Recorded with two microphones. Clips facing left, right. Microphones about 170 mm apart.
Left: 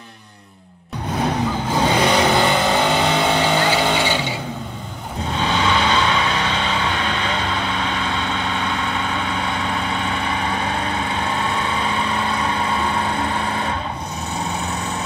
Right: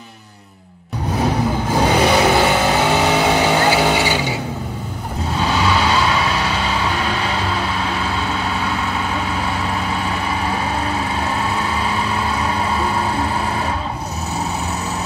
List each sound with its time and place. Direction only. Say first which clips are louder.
1.2 s vehicle: right 2 dB; 10° right (ahead or behind)
5.3 s vehicle: right 2 dB; 10° right (ahead or behind)